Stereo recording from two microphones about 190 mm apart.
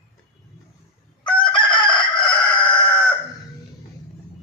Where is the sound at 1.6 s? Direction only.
25° left (ahead or behind).